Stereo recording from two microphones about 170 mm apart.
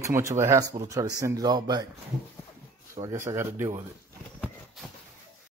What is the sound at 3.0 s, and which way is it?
Speech, 20° right (ahead or behind).